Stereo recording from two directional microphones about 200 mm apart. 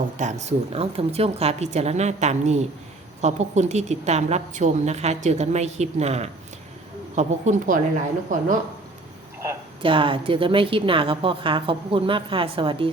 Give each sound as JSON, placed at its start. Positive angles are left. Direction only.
{"t": 0.2, "sound": "a woman's voice", "side_deg": -35}
{"t": 9.8, "sound": "a woman's voice", "side_deg": -25}